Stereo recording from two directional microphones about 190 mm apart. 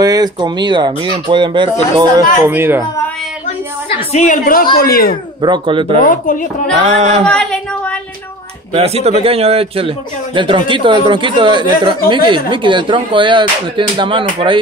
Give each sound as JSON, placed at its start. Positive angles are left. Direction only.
{"t": 0.0, "sound": "speech", "side_deg": -20}
{"t": 2.4, "sound": "speech", "side_deg": -10}
{"t": 3.4, "sound": "a sound", "side_deg": 35}
{"t": 4.7, "sound": "speech", "side_deg": 55}
{"t": 5.4, "sound": "speech", "side_deg": -25}
{"t": 6.0, "sound": "speech", "side_deg": 45}
{"t": 6.9, "sound": "speech", "side_deg": -35}
{"t": 7.2, "sound": "speech", "side_deg": 5}
{"t": 8.7, "sound": "speech", "side_deg": -30}